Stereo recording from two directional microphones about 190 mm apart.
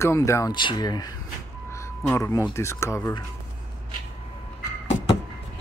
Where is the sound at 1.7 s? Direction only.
15° left (ahead or behind).